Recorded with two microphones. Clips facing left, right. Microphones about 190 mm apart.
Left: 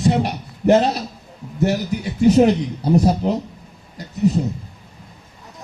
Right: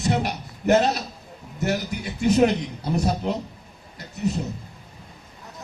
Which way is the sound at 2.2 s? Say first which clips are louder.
Left 6 dB; 35° left (ahead or behind).